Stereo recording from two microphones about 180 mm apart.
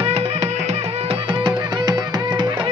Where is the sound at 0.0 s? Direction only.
35° right (ahead or behind).